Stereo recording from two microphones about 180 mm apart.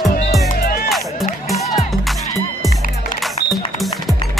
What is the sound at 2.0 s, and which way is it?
Music, centre (ahead or behind).